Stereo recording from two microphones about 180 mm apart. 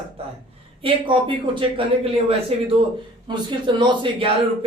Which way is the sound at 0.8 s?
30° right (ahead or behind).